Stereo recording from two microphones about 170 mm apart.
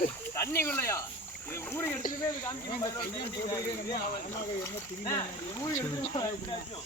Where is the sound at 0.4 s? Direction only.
15° left (ahead or behind).